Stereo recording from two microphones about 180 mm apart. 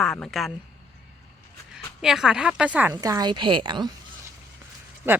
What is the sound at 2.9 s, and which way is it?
A woman's voice, 20° right (ahead or behind).